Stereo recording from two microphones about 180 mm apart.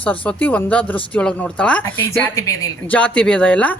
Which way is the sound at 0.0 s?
10° left (ahead or behind).